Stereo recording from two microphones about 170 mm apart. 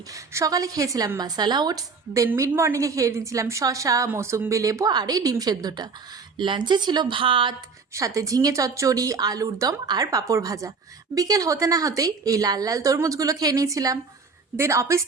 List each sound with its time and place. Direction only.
0.1 s a woman's voice: 20° right (ahead or behind)
7.9 s a woman's voice: 20° right (ahead or behind)